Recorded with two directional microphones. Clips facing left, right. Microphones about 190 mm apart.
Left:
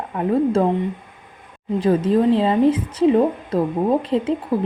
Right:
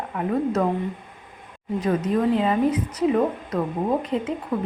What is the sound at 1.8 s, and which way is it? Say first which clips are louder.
A woman's voice: left 5 dB; 30° left (ahead or behind).